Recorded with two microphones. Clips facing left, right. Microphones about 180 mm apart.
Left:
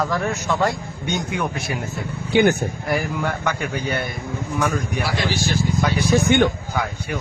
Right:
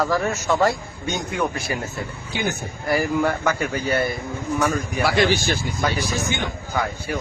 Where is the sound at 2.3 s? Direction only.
65° left (ahead or behind).